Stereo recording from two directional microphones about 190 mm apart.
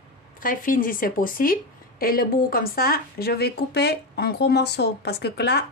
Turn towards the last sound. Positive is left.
turn(degrees=60)  # may be behind; listen again after turning